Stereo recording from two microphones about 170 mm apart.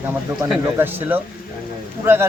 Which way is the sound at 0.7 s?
10° right (ahead or behind).